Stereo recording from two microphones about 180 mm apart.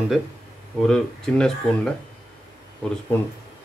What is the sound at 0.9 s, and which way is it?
Speech, centre (ahead or behind).